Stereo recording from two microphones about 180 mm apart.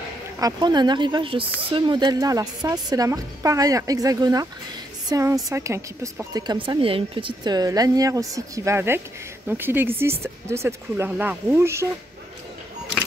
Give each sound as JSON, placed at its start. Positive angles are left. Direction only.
{"t": 0.4, "sound": "speech", "side_deg": -20}